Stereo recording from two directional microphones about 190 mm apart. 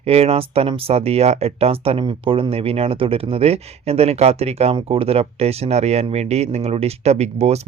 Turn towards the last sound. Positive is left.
turn(degrees=-35)  # may be behind; listen again after turning